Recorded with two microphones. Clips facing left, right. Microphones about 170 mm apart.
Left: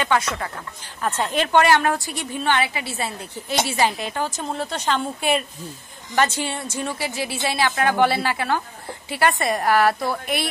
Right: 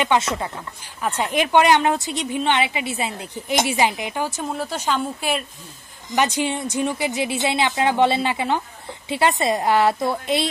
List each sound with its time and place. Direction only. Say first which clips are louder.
0.0 s a woman's voice: right 2 dB; 20° right (ahead or behind)
6.1 s speech: right 1 dB; 15° right (ahead or behind)